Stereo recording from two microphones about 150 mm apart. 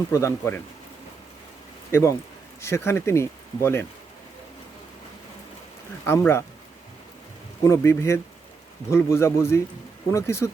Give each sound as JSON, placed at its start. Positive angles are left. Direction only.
{"t": 0.1, "sound": "speech", "side_deg": 20}
{"t": 1.9, "sound": "speech", "side_deg": 20}
{"t": 6.1, "sound": "speech", "side_deg": 15}
{"t": 7.7, "sound": "speech", "side_deg": 15}